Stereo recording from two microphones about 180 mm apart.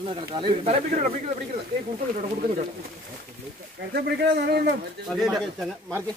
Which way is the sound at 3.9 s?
65° right (ahead or behind).